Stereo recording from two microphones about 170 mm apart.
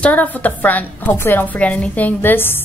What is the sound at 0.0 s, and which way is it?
A woman's voice, 10° left (ahead or behind).